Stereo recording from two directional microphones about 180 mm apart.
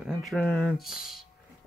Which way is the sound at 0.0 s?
Centre (ahead or behind).